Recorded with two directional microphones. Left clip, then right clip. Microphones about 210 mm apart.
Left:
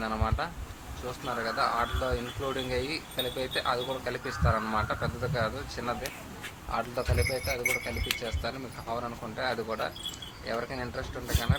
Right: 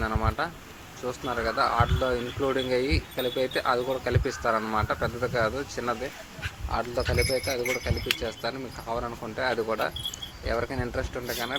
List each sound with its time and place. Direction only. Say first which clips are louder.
0.0 s speech: right 3 dB; 20° right (ahead or behind)